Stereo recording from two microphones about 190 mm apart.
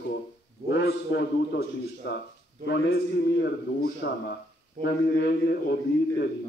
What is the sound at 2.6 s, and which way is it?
A man's voice, 60° left (ahead or behind).